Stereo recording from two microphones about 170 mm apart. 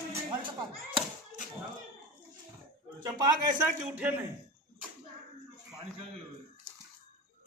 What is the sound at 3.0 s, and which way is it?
Speech, 20° right (ahead or behind).